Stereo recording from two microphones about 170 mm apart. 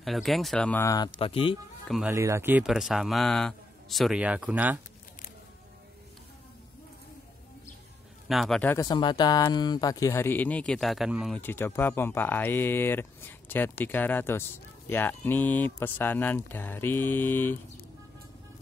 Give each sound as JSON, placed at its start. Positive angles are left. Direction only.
{"t": 0.0, "sound": "a man's voice", "side_deg": 0}
{"t": 1.2, "sound": "speech", "side_deg": 30}
{"t": 1.9, "sound": "a man's voice", "side_deg": -5}
{"t": 2.1, "sound": "a man's voice", "side_deg": -15}
{"t": 8.3, "sound": "a man's voice", "side_deg": 0}
{"t": 8.7, "sound": "speech", "side_deg": 25}
{"t": 11.3, "sound": "speech", "side_deg": 10}